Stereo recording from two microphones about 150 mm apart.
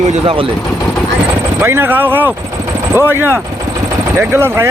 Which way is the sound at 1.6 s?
15° right (ahead or behind).